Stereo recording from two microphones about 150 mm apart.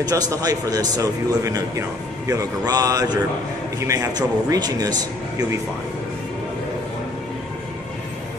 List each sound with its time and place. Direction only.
0.0 s speech: 25° right (ahead or behind)